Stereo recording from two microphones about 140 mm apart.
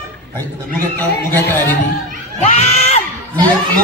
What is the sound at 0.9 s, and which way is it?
Speech, 15° left (ahead or behind).